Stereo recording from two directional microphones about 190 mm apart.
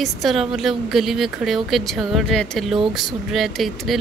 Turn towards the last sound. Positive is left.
turn(degrees=0)  # may be behind; listen again after turning